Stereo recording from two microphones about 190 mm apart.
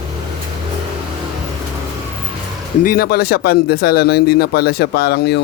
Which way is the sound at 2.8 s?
50° left (ahead or behind).